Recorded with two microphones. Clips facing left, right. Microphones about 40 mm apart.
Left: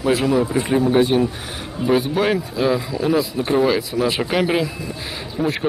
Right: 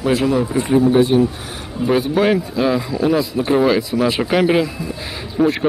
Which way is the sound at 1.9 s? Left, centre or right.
Centre.